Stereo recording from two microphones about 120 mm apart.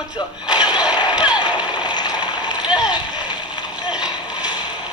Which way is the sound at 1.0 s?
10° right (ahead or behind).